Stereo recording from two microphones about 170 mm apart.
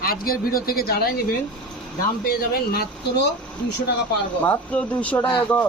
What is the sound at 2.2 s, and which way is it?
Speech, 60° left (ahead or behind).